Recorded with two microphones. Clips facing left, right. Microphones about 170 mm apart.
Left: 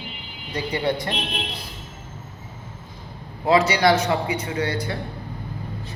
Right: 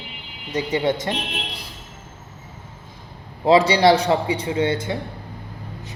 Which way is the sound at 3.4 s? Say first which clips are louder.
Right 3 dB; 30° right (ahead or behind).